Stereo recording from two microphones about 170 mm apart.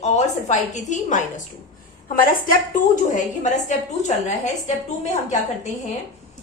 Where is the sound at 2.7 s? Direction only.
50° left (ahead or behind).